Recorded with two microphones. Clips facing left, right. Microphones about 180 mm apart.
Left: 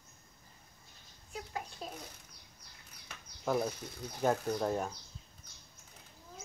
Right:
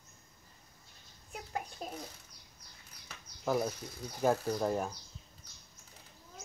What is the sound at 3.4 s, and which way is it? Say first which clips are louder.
Speech: even; 5° right (ahead or behind).